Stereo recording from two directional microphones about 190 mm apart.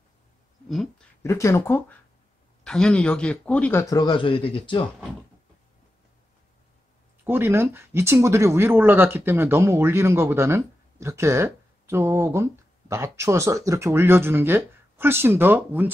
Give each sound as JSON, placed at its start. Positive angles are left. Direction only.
{"t": 0.7, "sound": "speech", "side_deg": 0}
{"t": 1.2, "sound": "speech", "side_deg": 15}
{"t": 3.8, "sound": "speech", "side_deg": 20}
{"t": 7.2, "sound": "speech", "side_deg": -10}